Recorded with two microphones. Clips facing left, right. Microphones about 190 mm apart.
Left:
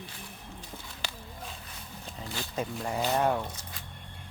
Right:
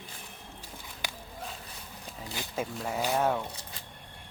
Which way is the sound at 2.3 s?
15° right (ahead or behind).